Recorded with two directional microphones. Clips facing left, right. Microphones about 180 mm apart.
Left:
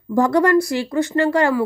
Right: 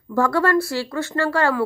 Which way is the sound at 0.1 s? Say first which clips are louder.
Left 4 dB; 15° left (ahead or behind).